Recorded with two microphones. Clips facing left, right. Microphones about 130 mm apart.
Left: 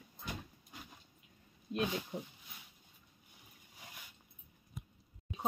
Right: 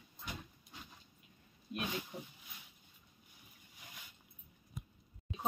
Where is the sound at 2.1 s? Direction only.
25° left (ahead or behind).